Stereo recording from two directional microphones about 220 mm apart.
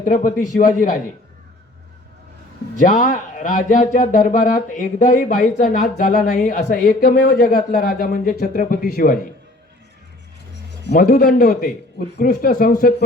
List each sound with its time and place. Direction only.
0.0 s speech: 40° left (ahead or behind)
2.7 s speech: 40° left (ahead or behind)
10.5 s speech: 45° left (ahead or behind)